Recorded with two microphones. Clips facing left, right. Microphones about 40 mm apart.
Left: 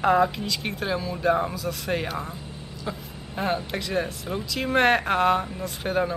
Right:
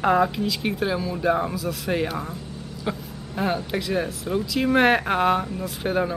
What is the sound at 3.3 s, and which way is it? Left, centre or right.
Speech, centre.